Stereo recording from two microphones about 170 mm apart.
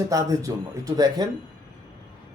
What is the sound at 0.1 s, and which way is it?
Speech, 20° right (ahead or behind).